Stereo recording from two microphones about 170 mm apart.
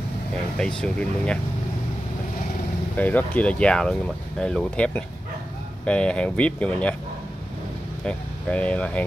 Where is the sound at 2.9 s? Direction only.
10° left (ahead or behind).